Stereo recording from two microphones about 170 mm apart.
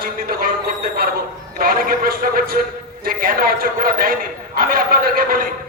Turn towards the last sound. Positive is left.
turn(degrees=-55)  # may be behind; listen again after turning